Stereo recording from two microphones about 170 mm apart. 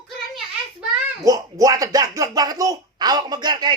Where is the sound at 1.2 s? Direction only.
20° right (ahead or behind).